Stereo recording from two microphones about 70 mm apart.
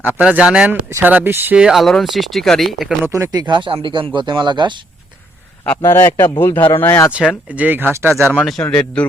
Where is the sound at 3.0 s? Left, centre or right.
Right.